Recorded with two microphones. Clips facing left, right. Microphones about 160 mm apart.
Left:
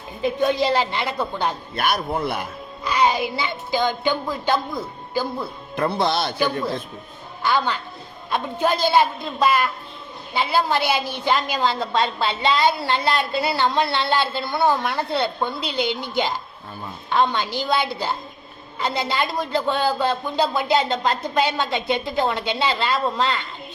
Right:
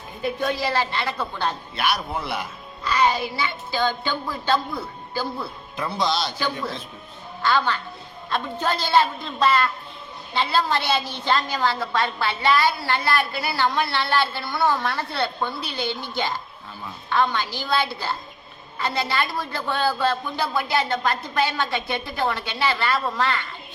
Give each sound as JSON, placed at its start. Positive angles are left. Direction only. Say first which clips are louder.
{"t": 0.2, "sound": "a woman's voice", "louder": "left 5 dB", "side_deg": 20}
{"t": 1.7, "sound": "a man's voice", "louder": "left 2 dB", "side_deg": 50}
{"t": 2.8, "sound": "a woman's voice", "louder": "left 1 dB", "side_deg": 15}
{"t": 5.7, "sound": "speech", "louder": "left 4 dB", "side_deg": 60}
{"t": 7.4, "sound": "a woman's voice", "louder": "even", "side_deg": 15}